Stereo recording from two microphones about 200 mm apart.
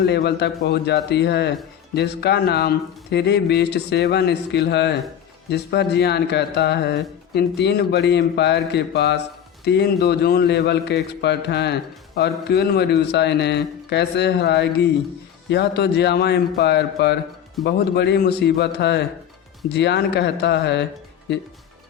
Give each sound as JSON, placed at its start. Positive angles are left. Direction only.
{"t": 0.0, "sound": "a man's voice", "side_deg": 55}